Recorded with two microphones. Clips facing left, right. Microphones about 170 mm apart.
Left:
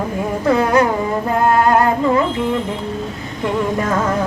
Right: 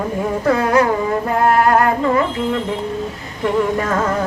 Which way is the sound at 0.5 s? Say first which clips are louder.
Left 1 dB; 20° left (ahead or behind).